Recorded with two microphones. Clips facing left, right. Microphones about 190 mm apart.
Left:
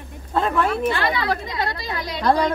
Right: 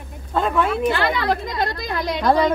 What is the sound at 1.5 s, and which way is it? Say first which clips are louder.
Speech: right 3 dB; 50° right (ahead or behind).